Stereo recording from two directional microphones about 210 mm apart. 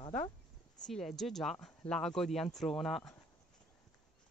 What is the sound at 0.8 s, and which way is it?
Speech, centre (ahead or behind).